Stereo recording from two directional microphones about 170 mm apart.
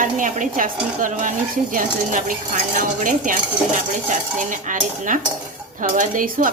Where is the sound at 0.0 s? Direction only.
50° right (ahead or behind).